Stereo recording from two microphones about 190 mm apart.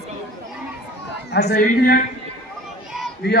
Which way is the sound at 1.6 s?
45° left (ahead or behind).